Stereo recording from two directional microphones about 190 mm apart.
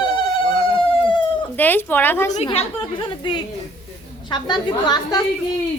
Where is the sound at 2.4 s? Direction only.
30° left (ahead or behind).